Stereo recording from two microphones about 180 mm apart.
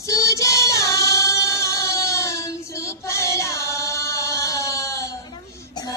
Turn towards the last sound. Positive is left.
turn(degrees=15)  # may be behind; listen again after turning